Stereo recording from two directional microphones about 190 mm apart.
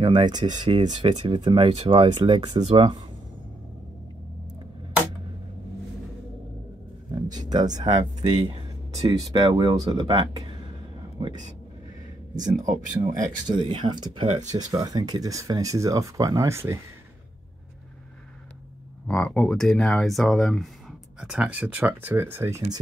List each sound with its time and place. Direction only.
0.0 s speech: 20° right (ahead or behind)
7.3 s speech: 20° right (ahead or behind)
8.0 s speech: 30° right (ahead or behind)
9.0 s speech: 20° right (ahead or behind)
12.4 s speech: 40° right (ahead or behind)
13.5 s speech: 25° right (ahead or behind)
14.2 s speech: 35° right (ahead or behind)
14.6 s speech: 20° right (ahead or behind)
19.0 s speech: 5° left (ahead or behind); by 22.8 s 15° right (ahead or behind)